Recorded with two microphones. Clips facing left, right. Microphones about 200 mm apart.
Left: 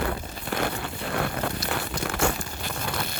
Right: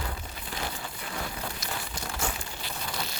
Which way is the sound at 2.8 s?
55° left (ahead or behind).